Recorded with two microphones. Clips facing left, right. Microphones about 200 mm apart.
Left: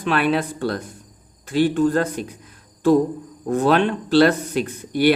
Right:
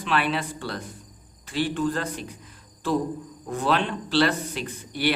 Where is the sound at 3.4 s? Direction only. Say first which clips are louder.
Left 7 dB; 45° left (ahead or behind).